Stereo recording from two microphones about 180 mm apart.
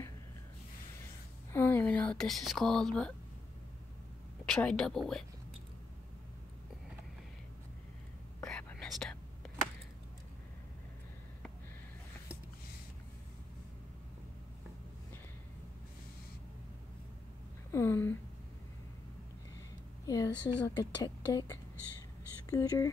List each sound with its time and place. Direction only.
1.5 s speech: 10° left (ahead or behind)
4.5 s a woman's voice: 5° left (ahead or behind)
8.5 s whispering: 5° left (ahead or behind)
17.6 s a sound: 15° left (ahead or behind)
20.1 s speech: 20° left (ahead or behind)